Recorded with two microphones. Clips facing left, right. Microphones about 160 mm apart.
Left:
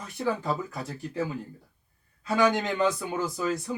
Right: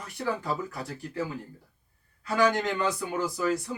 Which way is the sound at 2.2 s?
20° left (ahead or behind).